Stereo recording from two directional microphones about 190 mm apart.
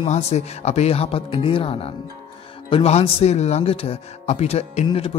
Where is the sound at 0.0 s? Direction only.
35° left (ahead or behind).